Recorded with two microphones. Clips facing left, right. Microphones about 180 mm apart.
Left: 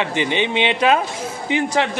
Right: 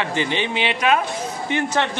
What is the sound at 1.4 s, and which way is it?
Speech, 15° left (ahead or behind).